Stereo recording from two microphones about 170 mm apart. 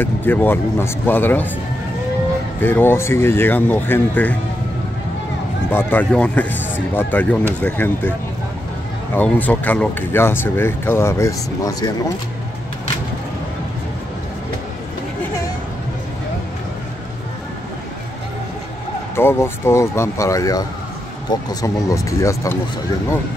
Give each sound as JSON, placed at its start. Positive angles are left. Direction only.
{"t": 0.0, "sound": "speech", "side_deg": 10}
{"t": 2.6, "sound": "speech", "side_deg": 10}
{"t": 5.7, "sound": "speech", "side_deg": 10}
{"t": 9.1, "sound": "speech", "side_deg": 10}
{"t": 19.1, "sound": "speech", "side_deg": 15}